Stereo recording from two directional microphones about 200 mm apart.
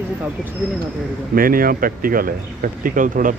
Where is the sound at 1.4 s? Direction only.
45° right (ahead or behind).